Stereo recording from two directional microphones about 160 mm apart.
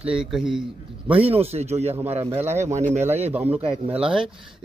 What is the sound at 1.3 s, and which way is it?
Speech, 40° right (ahead or behind).